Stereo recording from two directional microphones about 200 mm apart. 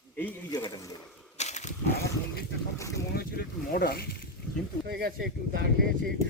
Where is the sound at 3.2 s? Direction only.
50° left (ahead or behind).